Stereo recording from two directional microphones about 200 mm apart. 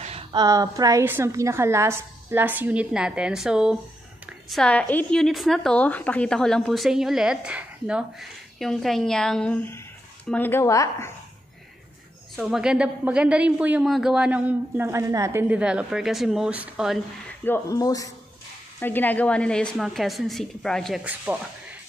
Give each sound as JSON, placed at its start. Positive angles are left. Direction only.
{"t": 0.0, "sound": "a sound", "side_deg": -30}
{"t": 0.4, "sound": "a woman's voice", "side_deg": -20}
{"t": 12.4, "sound": "a woman's voice", "side_deg": -5}
{"t": 17.5, "sound": "a woman's voice", "side_deg": 15}